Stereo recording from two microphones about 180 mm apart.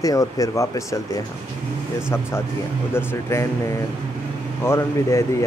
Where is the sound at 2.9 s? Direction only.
15° left (ahead or behind).